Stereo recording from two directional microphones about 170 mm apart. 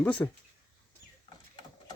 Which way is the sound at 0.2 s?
15° left (ahead or behind).